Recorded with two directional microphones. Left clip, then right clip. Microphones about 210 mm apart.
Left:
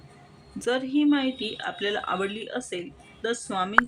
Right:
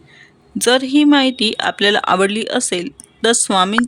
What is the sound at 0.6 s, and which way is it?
Speech, 50° right (ahead or behind).